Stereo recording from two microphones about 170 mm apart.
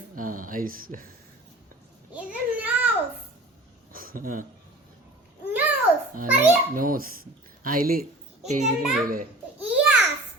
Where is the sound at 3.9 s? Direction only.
55° right (ahead or behind).